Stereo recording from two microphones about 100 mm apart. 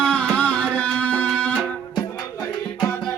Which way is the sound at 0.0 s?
10° left (ahead or behind).